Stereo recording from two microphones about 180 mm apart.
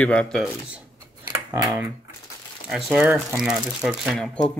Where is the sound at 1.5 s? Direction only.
20° right (ahead or behind).